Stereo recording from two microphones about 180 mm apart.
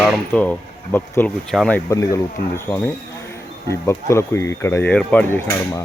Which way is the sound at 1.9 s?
15° left (ahead or behind).